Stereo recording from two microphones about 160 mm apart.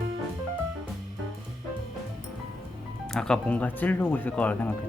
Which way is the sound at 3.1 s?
5° left (ahead or behind).